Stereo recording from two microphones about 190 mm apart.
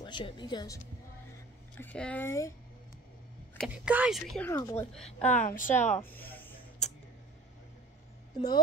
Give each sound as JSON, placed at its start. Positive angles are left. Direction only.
{"t": 0.0, "sound": "speech", "side_deg": 25}
{"t": 1.8, "sound": "speech", "side_deg": 5}
{"t": 3.5, "sound": "speech", "side_deg": -5}
{"t": 4.5, "sound": "speech", "side_deg": 15}
{"t": 4.9, "sound": "speech", "side_deg": 5}
{"t": 5.3, "sound": "a woman's voice", "side_deg": 40}
{"t": 5.9, "sound": "a sound", "side_deg": 10}